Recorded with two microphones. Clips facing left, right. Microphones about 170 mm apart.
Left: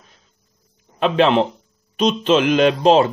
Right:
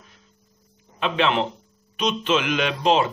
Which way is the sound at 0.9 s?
40° left (ahead or behind).